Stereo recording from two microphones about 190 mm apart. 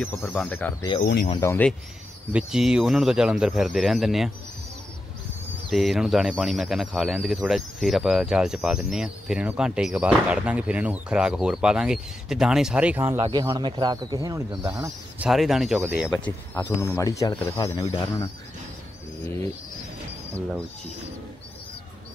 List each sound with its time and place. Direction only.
0.0 s speech: 10° left (ahead or behind)
2.3 s speech: 5° right (ahead or behind)
5.7 s speech: centre (ahead or behind)
13.3 s speech: 20° right (ahead or behind)
14.7 s speech: 10° right (ahead or behind)
16.6 s speech: 15° left (ahead or behind)